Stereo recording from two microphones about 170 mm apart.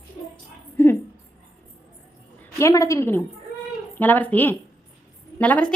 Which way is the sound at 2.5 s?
15° left (ahead or behind).